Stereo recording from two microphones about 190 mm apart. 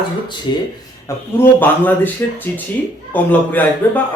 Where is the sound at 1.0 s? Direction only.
10° left (ahead or behind).